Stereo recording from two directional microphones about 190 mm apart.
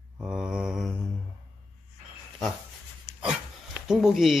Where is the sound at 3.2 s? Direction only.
5° right (ahead or behind).